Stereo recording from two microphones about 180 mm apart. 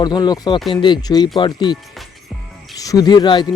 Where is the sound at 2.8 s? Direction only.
20° left (ahead or behind).